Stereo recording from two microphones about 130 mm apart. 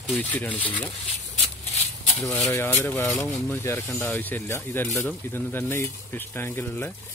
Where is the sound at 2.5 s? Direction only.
20° left (ahead or behind).